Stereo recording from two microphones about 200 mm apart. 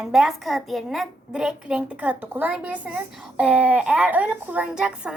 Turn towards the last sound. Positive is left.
turn(degrees=-5)  # may be behind; listen again after turning